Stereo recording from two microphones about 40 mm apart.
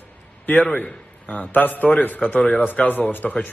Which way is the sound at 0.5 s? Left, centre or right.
Left.